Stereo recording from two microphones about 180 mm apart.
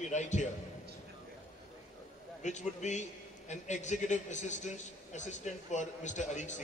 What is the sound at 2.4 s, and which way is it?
A man's voice, 40° left (ahead or behind).